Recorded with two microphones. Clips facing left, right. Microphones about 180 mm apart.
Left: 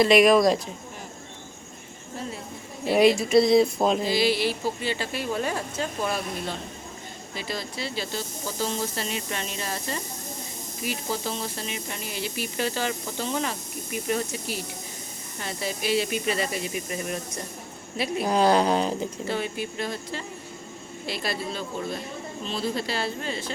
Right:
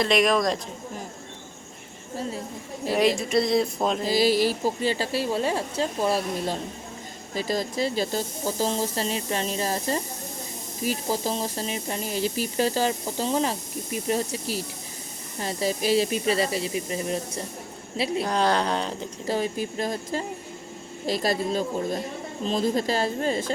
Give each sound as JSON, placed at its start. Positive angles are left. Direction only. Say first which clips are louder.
{"t": 0.0, "sound": "speech", "louder": "left 4 dB", "side_deg": 5}
{"t": 3.2, "sound": "speech", "louder": "left 4 dB", "side_deg": 0}
{"t": 4.0, "sound": "speech", "louder": "right 2 dB", "side_deg": -40}
{"t": 18.3, "sound": "speech", "louder": "left 6 dB", "side_deg": 10}
{"t": 19.3, "sound": "a woman's voice", "louder": "right 7 dB", "side_deg": -35}